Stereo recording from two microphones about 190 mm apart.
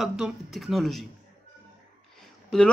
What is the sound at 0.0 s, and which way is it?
Speech, centre (ahead or behind).